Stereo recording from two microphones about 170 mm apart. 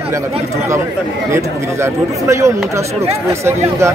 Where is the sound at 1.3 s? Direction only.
15° right (ahead or behind).